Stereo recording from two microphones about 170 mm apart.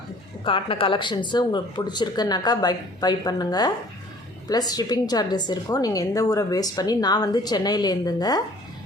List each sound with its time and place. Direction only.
0.4 s a woman's voice: 30° left (ahead or behind)